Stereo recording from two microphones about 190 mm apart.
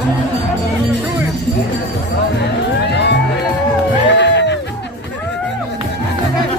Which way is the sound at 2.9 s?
65° left (ahead or behind).